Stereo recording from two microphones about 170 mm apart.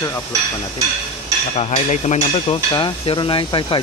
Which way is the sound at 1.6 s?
40° left (ahead or behind).